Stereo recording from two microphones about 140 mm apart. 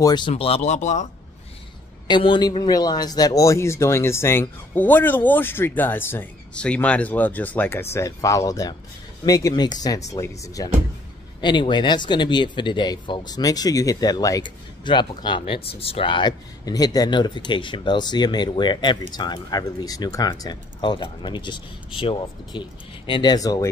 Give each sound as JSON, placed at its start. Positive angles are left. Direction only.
{"t": 0.0, "sound": "speech", "side_deg": 30}
{"t": 0.3, "sound": "speech", "side_deg": 45}
{"t": 2.0, "sound": "speech", "side_deg": 35}
{"t": 11.4, "sound": "speech", "side_deg": 35}